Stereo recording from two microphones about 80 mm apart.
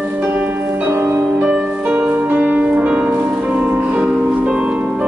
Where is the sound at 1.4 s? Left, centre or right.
Centre.